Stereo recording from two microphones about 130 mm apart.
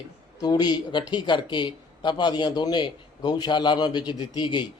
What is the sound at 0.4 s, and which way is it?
Speech, 35° left (ahead or behind).